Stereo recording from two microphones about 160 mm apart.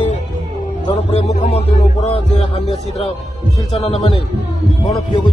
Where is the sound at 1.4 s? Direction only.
40° left (ahead or behind).